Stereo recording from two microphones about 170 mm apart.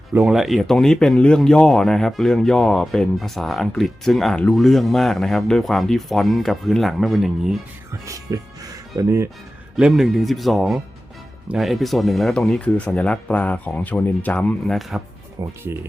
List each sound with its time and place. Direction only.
0.1 s speech: 5° right (ahead or behind)
8.0 s speech: 20° right (ahead or behind)
9.7 s speech: centre (ahead or behind)
15.4 s speech: 15° right (ahead or behind)